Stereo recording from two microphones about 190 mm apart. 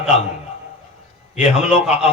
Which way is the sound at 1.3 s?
5° right (ahead or behind).